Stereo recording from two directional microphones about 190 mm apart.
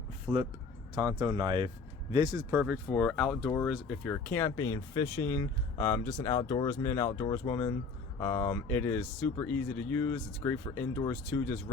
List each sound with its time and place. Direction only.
0.3 s speech: 15° right (ahead or behind)
2.5 s speech: 5° right (ahead or behind)